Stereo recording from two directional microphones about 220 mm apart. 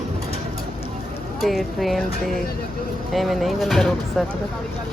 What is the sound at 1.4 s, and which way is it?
Speech, centre (ahead or behind).